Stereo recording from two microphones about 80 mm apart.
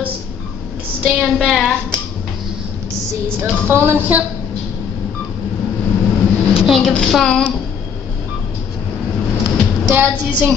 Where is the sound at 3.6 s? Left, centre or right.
Right.